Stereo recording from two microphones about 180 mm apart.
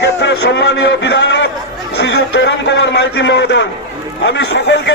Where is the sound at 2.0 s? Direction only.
75° left (ahead or behind).